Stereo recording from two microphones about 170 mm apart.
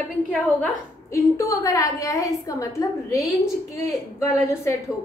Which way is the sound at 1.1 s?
20° left (ahead or behind).